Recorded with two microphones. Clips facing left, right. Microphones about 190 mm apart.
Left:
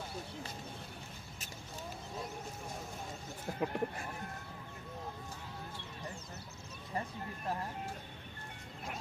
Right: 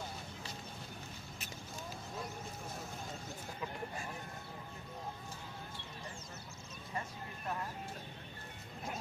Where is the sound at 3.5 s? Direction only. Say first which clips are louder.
Left 8 dB; 60° left (ahead or behind).